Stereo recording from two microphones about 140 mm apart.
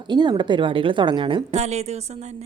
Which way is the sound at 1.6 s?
50° right (ahead or behind).